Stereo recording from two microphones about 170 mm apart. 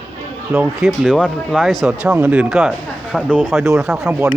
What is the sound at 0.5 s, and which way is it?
Speech, centre (ahead or behind).